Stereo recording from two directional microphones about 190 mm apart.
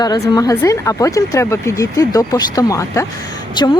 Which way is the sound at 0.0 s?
20° left (ahead or behind).